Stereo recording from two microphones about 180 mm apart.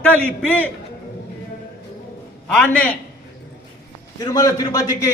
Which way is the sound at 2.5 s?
5° left (ahead or behind).